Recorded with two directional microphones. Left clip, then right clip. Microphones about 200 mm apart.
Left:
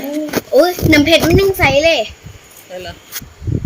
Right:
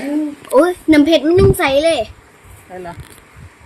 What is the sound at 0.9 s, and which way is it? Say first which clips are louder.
A child's voice: even; 15° right (ahead or behind).